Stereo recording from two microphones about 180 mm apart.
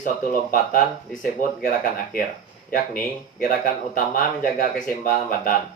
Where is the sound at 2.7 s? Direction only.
50° left (ahead or behind).